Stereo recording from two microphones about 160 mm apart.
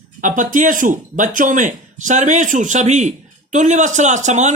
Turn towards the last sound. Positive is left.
turn(degrees=-45)  # may be behind; listen again after turning